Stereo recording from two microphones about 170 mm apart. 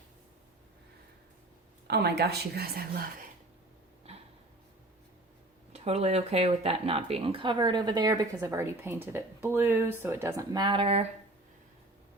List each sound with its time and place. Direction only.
1.9 s speech: 70° right (ahead or behind)
5.7 s speech: 40° right (ahead or behind)